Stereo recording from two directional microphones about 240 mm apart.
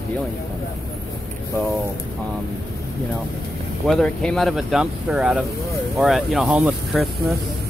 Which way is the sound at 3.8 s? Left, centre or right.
Centre.